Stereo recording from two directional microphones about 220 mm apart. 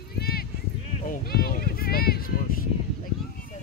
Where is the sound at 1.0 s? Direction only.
40° left (ahead or behind).